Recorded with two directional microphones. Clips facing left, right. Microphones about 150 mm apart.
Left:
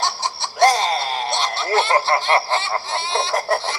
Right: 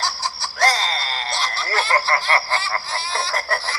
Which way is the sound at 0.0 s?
20° left (ahead or behind).